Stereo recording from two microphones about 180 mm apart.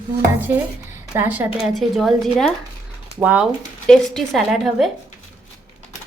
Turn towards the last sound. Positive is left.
turn(degrees=0)  # may be behind; listen again after turning